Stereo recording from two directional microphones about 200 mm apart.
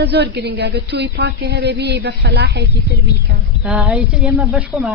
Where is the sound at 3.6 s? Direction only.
5° right (ahead or behind).